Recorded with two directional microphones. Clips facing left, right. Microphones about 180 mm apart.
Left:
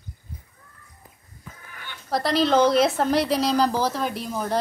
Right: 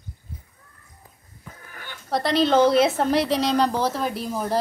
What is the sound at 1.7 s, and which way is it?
Chicken, 45° right (ahead or behind).